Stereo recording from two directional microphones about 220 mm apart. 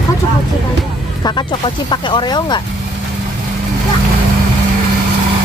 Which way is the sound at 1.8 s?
20° left (ahead or behind).